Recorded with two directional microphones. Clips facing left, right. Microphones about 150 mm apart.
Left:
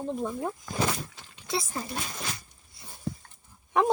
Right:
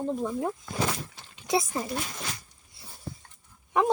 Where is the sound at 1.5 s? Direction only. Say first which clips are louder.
Right 5 dB; 20° right (ahead or behind).